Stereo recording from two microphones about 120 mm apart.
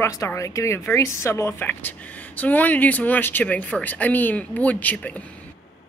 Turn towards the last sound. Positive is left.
turn(degrees=10)  # may be behind; listen again after turning